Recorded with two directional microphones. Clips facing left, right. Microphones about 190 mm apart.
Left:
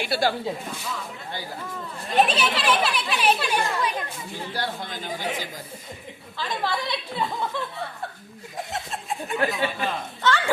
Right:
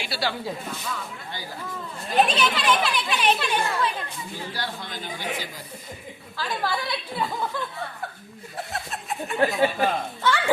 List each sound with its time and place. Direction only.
0.0 s speech: 50° left (ahead or behind)
2.0 s speech: centre (ahead or behind)
2.3 s speech: 30° left (ahead or behind)
2.6 s speech: centre (ahead or behind)
4.5 s speech: 50° left (ahead or behind)
6.3 s speech: 5° right (ahead or behind)
8.5 s chuckle: 20° left (ahead or behind)
9.6 s speech: 45° right (ahead or behind)
10.2 s a child's voice: 15° right (ahead or behind)